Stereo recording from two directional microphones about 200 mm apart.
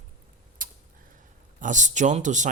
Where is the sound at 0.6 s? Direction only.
45° right (ahead or behind).